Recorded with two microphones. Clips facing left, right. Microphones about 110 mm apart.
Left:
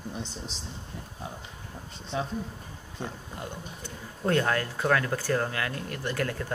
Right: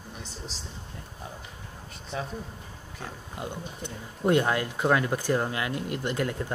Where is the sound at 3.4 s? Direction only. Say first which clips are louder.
Right 5 dB; 20° right (ahead or behind).